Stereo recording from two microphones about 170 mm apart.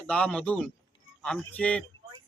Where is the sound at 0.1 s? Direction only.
5° left (ahead or behind).